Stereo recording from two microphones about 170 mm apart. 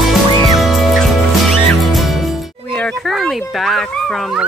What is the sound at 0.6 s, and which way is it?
Music, centre (ahead or behind).